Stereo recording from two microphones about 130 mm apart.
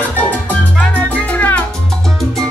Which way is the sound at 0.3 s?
10° left (ahead or behind).